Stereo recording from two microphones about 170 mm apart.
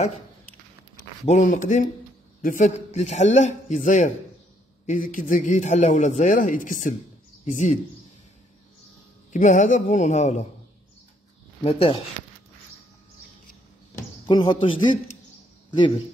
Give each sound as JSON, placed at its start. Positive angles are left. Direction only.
{"t": 1.2, "sound": "a man's voice", "side_deg": 40}
{"t": 9.3, "sound": "a man's voice", "side_deg": 50}
{"t": 11.6, "sound": "speech", "side_deg": 30}
{"t": 14.2, "sound": "speech", "side_deg": 25}